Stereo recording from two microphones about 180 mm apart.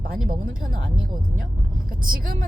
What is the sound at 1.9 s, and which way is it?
Speech, 50° right (ahead or behind).